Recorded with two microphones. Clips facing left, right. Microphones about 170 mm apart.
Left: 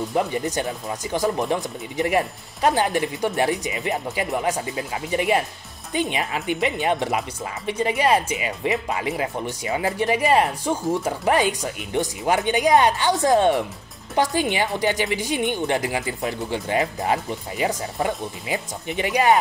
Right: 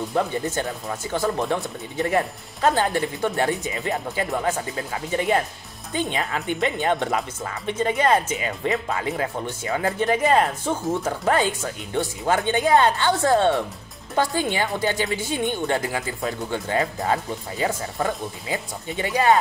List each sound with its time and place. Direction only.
0.1 s speech: 15° left (ahead or behind)